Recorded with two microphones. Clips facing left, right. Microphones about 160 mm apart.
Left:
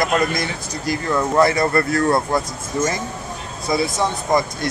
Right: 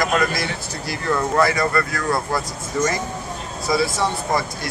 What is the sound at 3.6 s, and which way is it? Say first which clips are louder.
Speech: even; 20° left (ahead or behind).